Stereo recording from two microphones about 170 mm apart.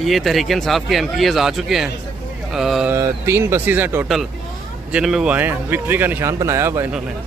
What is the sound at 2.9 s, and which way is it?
Speech, 15° right (ahead or behind).